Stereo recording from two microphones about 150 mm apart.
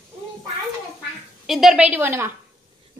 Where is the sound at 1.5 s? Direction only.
Centre (ahead or behind).